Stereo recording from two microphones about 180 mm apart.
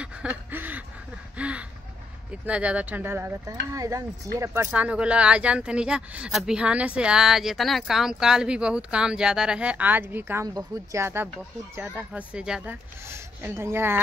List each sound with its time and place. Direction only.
0.0 s a sound: 5° right (ahead or behind)
2.4 s speech: 5° right (ahead or behind)
4.6 s speech: 5° right (ahead or behind)